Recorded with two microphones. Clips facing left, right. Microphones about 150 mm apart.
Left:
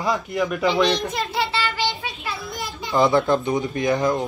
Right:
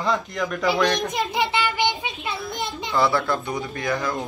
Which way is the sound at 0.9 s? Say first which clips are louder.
Even; 15° right (ahead or behind).